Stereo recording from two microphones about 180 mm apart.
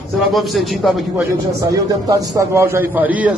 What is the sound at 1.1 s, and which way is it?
Speech, 20° right (ahead or behind).